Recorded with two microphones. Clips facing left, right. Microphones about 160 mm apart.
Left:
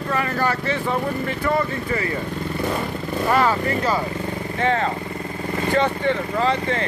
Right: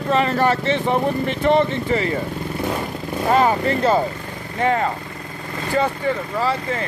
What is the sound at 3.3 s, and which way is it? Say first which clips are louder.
Speech: right 3 dB; 25° right (ahead or behind).